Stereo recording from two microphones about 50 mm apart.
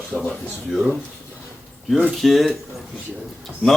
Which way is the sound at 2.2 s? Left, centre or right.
Centre.